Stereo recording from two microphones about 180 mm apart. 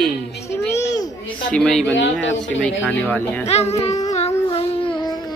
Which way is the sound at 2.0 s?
90° left.